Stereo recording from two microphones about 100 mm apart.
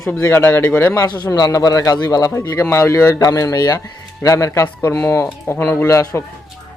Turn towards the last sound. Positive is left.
turn(degrees=30)  # may be behind; listen again after turning